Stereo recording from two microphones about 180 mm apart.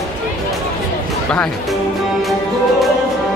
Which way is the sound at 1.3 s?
5° left (ahead or behind).